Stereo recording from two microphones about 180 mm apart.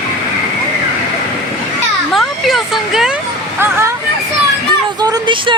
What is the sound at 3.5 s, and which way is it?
Hubbub, 15° right (ahead or behind).